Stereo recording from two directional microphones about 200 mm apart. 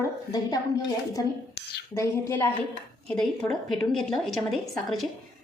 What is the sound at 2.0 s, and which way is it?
A woman's voice, 15° left (ahead or behind).